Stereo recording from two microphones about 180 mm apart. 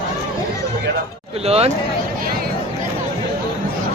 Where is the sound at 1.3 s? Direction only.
35° right (ahead or behind).